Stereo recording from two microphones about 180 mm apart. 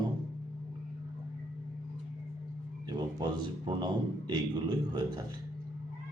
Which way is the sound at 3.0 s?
25° right (ahead or behind).